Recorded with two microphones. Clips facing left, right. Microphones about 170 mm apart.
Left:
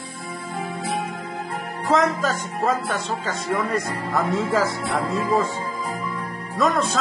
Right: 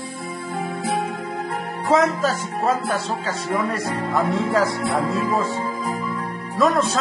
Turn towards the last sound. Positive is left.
turn(degrees=0)  # may be behind; listen again after turning